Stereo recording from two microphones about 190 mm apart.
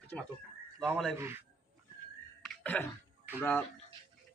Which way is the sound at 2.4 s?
10° left (ahead or behind).